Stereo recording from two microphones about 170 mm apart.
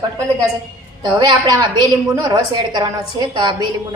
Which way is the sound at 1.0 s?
25° right (ahead or behind).